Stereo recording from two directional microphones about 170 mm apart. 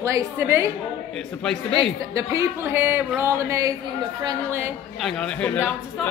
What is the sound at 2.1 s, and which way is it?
A woman's voice, 15° right (ahead or behind).